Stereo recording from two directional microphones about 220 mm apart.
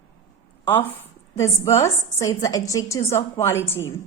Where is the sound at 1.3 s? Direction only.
15° left (ahead or behind).